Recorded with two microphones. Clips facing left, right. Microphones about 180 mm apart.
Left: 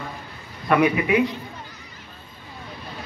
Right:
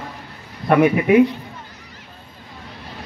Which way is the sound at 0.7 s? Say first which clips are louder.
Right 5 dB; 45° right (ahead or behind).